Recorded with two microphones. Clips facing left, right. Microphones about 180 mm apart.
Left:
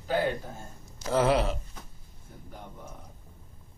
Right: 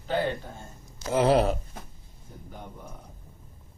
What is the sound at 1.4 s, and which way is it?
Speech, 55° right (ahead or behind).